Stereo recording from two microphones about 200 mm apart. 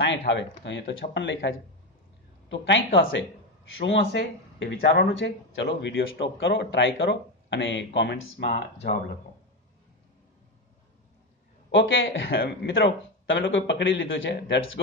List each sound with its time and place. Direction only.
0.3 s speech: 65° left (ahead or behind)
8.5 s speech: 40° left (ahead or behind)
11.7 s speech: 75° left (ahead or behind)